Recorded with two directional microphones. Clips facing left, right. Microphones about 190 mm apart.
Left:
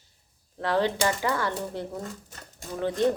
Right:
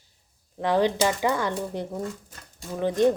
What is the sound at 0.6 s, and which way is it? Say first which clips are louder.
Speech: right 3 dB; 15° right (ahead or behind).